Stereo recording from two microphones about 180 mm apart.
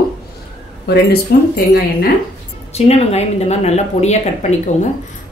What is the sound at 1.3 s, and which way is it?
Speech, 60° left (ahead or behind).